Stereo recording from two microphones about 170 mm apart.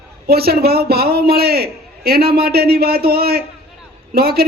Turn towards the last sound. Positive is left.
turn(degrees=-65)  # may be behind; listen again after turning